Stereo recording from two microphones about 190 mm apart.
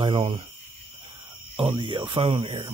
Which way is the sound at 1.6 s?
30° right (ahead or behind).